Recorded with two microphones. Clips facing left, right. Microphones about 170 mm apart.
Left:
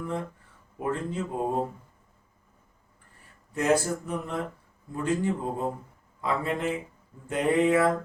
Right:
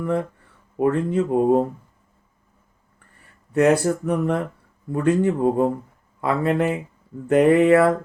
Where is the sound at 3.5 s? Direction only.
65° right (ahead or behind).